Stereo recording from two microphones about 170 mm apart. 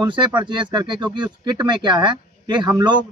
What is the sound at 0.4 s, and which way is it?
A man's voice, 25° right (ahead or behind).